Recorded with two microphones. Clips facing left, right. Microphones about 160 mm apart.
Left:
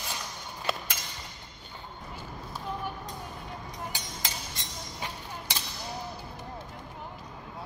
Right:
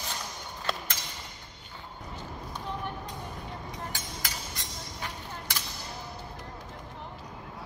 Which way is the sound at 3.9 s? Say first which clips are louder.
Even; 20° left (ahead or behind).